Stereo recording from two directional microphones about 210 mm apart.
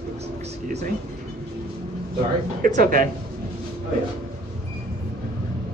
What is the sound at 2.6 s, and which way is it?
Speech, 40° right (ahead or behind).